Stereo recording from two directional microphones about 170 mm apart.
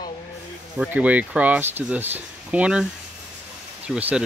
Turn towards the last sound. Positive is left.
turn(degrees=-5)  # may be behind; listen again after turning